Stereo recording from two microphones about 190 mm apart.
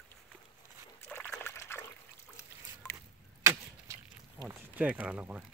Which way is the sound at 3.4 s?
15° right (ahead or behind).